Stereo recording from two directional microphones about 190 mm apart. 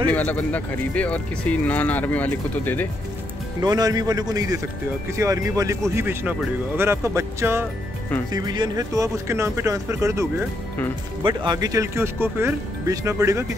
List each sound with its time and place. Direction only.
0.1 s speech: 10° left (ahead or behind)
3.6 s a man's voice: 20° right (ahead or behind)
11.2 s speech: 20° right (ahead or behind)